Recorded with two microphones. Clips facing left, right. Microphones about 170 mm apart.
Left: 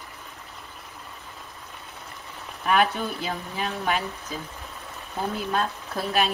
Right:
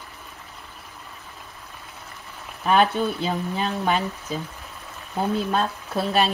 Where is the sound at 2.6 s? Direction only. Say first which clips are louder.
Right 3 dB; 30° right (ahead or behind).